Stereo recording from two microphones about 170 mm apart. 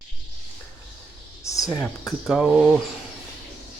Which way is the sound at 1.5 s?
20° left (ahead or behind).